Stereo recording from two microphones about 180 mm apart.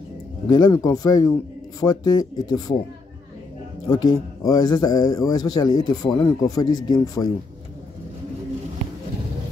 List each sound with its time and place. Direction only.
0.5 s a man's voice: 20° left (ahead or behind)
3.8 s a man's voice: 20° left (ahead or behind)